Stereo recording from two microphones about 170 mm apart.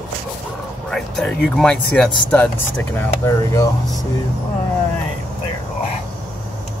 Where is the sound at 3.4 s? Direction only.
20° left (ahead or behind).